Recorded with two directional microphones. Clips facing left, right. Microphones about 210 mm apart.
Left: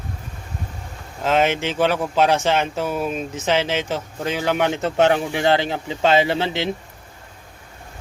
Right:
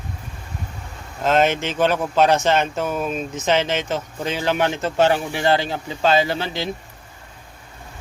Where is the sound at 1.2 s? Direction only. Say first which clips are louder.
Right 1 dB; 10° left (ahead or behind); by 6.6 s 25° left (ahead or behind).